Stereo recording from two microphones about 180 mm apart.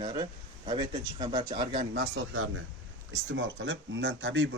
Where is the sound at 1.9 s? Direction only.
90° right.